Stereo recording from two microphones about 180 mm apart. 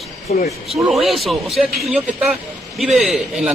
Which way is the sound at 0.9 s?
Centre (ahead or behind).